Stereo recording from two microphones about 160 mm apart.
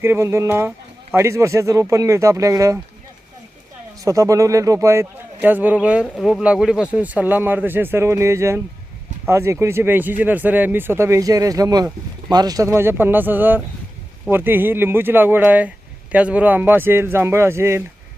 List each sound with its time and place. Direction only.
0.0 s a man's voice: 15° right (ahead or behind)
4.0 s a man's voice: 20° right (ahead or behind)